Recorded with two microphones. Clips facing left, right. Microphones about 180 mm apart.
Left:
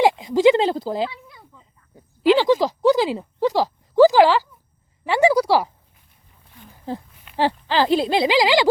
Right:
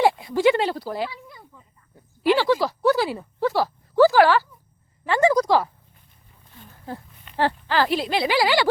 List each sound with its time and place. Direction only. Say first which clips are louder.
0.0 s speech: left 3 dB; 15° left (ahead or behind)
2.2 s a sound: left 3 dB; 15° left (ahead or behind)
7.3 s speech: left 2 dB; 15° left (ahead or behind)